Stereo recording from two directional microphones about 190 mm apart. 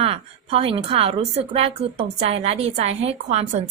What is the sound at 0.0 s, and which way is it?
A woman's voice, 30° right (ahead or behind).